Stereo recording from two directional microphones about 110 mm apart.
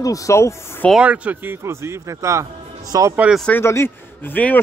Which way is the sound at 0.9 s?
10° right (ahead or behind).